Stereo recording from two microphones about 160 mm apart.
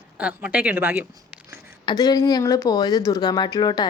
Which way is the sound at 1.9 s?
25° left (ahead or behind).